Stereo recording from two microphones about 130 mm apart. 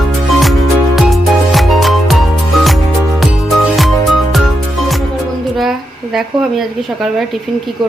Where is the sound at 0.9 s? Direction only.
Centre (ahead or behind).